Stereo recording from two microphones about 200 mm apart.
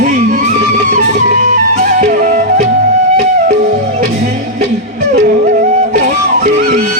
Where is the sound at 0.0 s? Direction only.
40° right (ahead or behind).